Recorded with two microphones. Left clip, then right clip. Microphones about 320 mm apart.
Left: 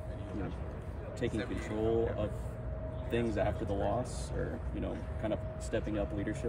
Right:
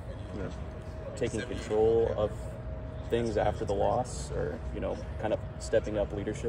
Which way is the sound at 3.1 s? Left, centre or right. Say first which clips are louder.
Right 4 dB; centre.